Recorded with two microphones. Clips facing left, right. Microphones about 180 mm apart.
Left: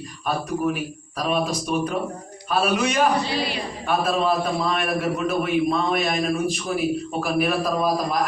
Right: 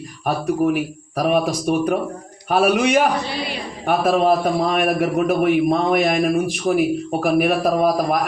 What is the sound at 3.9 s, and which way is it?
A man's voice, 55° right (ahead or behind).